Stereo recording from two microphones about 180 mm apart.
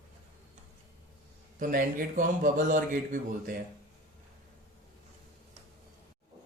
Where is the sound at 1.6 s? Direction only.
50° right (ahead or behind).